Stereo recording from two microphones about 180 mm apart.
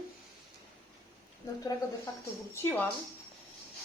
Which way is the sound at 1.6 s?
20° left (ahead or behind).